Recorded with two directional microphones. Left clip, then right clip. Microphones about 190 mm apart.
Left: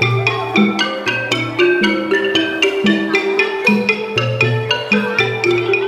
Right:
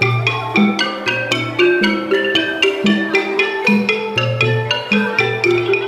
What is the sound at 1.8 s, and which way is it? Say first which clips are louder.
Music: left 1 dB; centre (ahead or behind).